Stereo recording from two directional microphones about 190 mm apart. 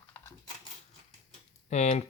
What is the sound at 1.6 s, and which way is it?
Speech, 35° left (ahead or behind).